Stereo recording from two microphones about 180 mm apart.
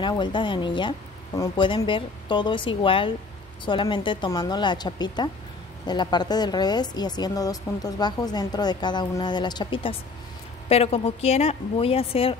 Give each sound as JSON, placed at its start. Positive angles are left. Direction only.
{"t": 0.0, "sound": "a woman's voice", "side_deg": 25}